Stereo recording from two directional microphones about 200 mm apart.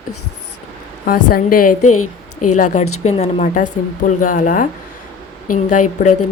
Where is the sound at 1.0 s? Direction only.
45° left (ahead or behind).